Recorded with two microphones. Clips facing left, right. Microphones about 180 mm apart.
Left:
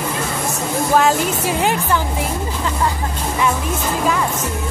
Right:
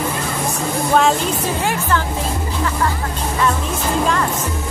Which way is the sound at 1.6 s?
20° left (ahead or behind).